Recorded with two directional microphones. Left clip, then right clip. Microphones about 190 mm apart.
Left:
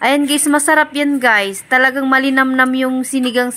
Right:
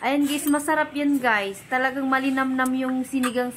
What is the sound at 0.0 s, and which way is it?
A woman's voice, 40° left (ahead or behind).